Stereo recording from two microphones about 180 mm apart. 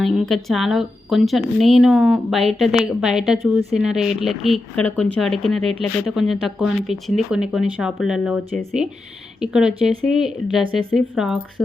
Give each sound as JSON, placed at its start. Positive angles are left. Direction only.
{"t": 0.0, "sound": "speech", "side_deg": 0}